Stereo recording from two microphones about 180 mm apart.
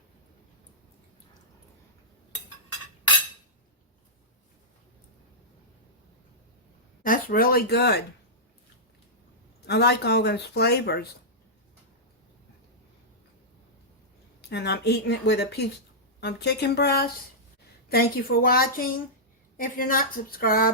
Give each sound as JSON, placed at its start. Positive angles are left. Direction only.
{"t": 7.0, "sound": "speech", "side_deg": 50}
{"t": 9.6, "sound": "speech", "side_deg": 65}
{"t": 14.4, "sound": "speech", "side_deg": 65}